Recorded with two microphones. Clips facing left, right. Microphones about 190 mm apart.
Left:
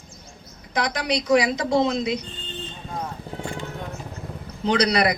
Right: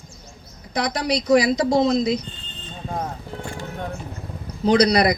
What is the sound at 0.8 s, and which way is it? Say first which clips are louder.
Speech: right 2 dB; 35° right (ahead or behind).